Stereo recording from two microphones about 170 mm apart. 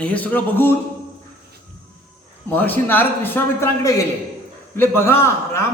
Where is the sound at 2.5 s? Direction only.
10° left (ahead or behind).